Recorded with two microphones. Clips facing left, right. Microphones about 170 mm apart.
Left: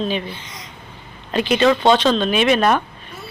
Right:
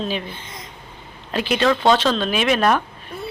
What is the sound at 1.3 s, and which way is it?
Speech, 5° right (ahead or behind).